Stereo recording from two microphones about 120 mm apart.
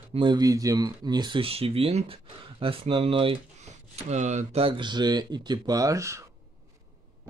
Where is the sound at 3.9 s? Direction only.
75° right (ahead or behind).